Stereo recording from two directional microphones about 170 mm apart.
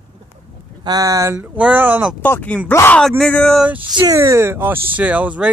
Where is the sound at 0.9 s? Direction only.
20° right (ahead or behind).